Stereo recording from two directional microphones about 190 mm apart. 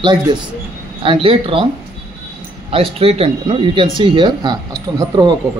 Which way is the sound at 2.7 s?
30° right (ahead or behind).